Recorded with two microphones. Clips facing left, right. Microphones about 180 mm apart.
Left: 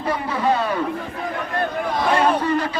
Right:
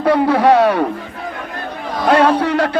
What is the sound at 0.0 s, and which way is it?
Speech, 75° right (ahead or behind).